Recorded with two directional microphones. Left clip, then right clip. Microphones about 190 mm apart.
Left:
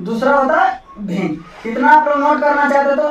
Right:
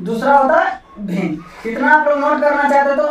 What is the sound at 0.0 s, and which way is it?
Speech, 10° left (ahead or behind).